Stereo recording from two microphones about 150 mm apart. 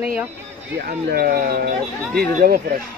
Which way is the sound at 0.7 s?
90° right.